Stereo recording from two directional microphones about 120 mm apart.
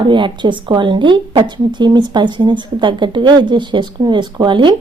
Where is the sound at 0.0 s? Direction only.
40° right (ahead or behind).